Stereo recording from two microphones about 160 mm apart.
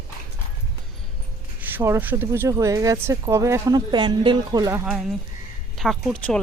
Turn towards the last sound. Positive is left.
turn(degrees=5)  # may be behind; listen again after turning